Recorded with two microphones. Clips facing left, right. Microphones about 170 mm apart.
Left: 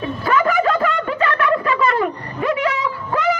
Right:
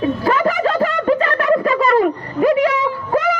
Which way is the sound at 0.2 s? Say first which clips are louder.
Right 1 dB; 35° right (ahead or behind).